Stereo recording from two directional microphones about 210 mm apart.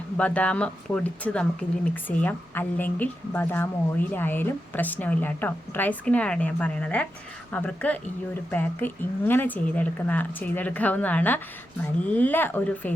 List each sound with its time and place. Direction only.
0.2 s speech: 5° left (ahead or behind)